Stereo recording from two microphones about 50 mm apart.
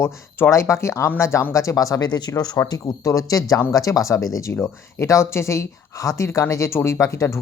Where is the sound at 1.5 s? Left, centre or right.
Left.